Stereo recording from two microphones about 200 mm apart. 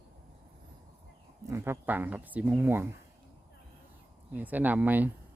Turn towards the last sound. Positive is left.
turn(degrees=-10)  # may be behind; listen again after turning